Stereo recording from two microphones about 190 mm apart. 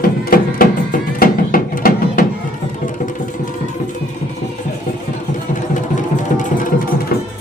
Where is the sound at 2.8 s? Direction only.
45° left (ahead or behind).